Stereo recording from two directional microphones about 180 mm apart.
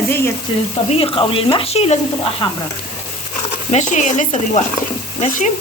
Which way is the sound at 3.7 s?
40° left (ahead or behind).